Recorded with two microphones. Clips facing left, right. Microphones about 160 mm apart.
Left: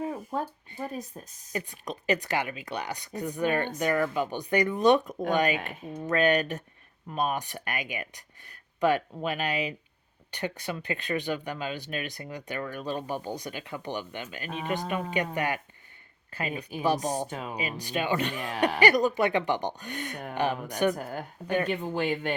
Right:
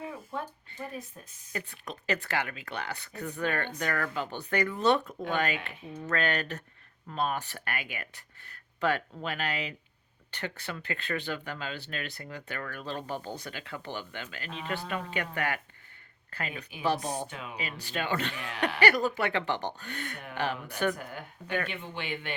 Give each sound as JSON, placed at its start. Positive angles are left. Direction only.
{"t": 0.0, "sound": "speech", "side_deg": 40}
{"t": 1.5, "sound": "speech", "side_deg": 20}
{"t": 16.8, "sound": "speech", "side_deg": 15}
{"t": 17.2, "sound": "speech", "side_deg": 40}
{"t": 17.6, "sound": "speech", "side_deg": 15}
{"t": 20.9, "sound": "speech", "side_deg": 40}